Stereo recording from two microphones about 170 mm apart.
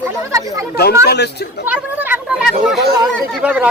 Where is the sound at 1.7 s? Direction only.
10° right (ahead or behind).